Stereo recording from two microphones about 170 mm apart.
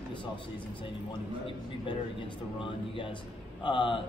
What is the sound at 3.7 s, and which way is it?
Speech, 30° left (ahead or behind).